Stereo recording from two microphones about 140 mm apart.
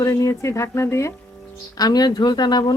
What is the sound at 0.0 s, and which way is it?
A woman's voice, 25° left (ahead or behind).